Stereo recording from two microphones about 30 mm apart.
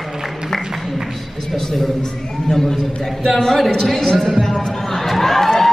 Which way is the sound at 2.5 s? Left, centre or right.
Centre.